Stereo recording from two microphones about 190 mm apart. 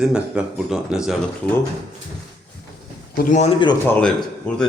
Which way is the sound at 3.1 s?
40° left (ahead or behind).